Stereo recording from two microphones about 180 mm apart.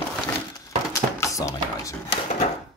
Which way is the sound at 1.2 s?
20° left (ahead or behind).